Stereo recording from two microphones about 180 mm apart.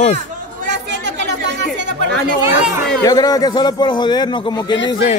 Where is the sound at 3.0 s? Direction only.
20° left (ahead or behind).